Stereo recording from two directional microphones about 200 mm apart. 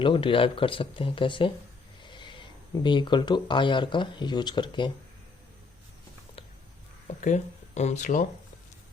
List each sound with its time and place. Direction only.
0.0 s speech: 25° left (ahead or behind)
7.2 s speech: 35° left (ahead or behind)